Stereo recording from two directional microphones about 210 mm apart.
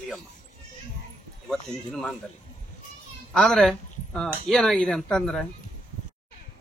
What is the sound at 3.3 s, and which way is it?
Speech, 5° left (ahead or behind).